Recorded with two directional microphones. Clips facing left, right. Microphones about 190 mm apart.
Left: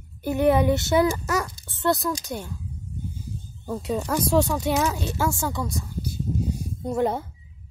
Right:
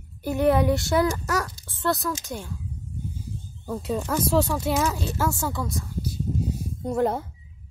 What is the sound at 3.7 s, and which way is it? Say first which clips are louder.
Speech: left 1 dB; 5° left (ahead or behind).